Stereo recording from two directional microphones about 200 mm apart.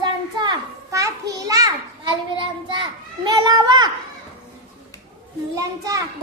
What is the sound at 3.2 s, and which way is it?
Speech, 20° right (ahead or behind).